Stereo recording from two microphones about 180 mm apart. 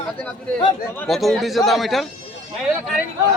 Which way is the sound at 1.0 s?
Centre (ahead or behind).